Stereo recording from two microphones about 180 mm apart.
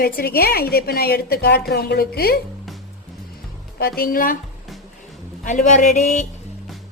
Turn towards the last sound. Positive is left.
turn(degrees=40)  # may be behind; listen again after turning